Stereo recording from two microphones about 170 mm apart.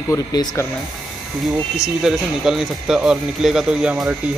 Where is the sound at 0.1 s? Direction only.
20° left (ahead or behind).